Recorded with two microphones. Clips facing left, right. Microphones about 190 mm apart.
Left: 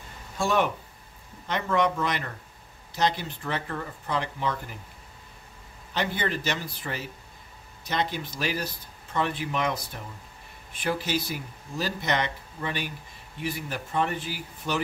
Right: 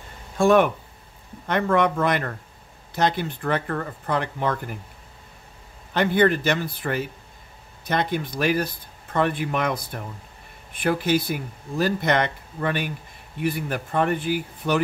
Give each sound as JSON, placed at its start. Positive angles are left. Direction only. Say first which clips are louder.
{"t": 0.4, "sound": "speech", "louder": "right 8 dB", "side_deg": -55}
{"t": 5.9, "sound": "speech", "louder": "right 9 dB", "side_deg": -55}